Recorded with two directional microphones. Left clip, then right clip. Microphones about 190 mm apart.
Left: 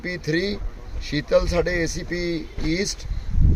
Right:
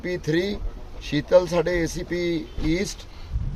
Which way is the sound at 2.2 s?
50° right (ahead or behind).